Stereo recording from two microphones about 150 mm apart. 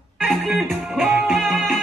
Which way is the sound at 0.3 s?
Centre (ahead or behind).